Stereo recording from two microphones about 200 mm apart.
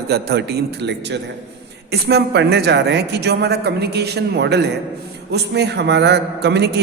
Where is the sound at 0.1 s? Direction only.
55° right (ahead or behind).